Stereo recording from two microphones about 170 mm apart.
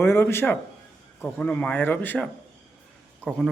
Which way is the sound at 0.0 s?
15° left (ahead or behind).